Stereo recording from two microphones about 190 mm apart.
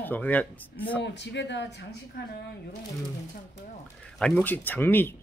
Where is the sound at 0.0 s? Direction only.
10° left (ahead or behind).